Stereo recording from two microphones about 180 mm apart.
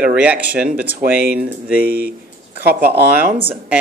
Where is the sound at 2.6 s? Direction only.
60° right (ahead or behind).